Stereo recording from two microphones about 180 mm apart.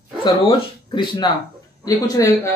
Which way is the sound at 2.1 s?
15° left (ahead or behind).